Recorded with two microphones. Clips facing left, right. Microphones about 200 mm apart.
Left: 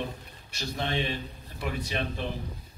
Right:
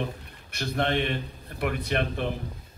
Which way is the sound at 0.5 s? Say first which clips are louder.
Right 5 dB; 55° right (ahead or behind).